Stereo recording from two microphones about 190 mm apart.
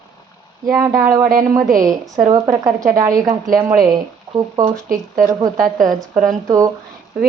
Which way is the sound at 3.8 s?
20° right (ahead or behind).